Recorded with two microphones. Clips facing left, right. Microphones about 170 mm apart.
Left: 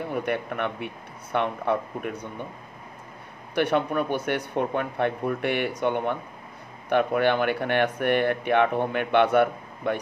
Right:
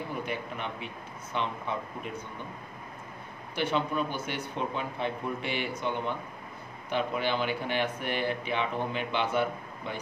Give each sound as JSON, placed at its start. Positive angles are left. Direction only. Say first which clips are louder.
{"t": 0.1, "sound": "speech", "louder": "left 7 dB", "side_deg": 60}
{"t": 3.5, "sound": "speech", "louder": "left 6 dB", "side_deg": 60}